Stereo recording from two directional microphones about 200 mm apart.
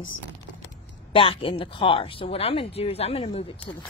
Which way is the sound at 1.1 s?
25° left (ahead or behind).